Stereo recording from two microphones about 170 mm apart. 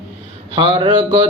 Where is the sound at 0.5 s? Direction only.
25° right (ahead or behind).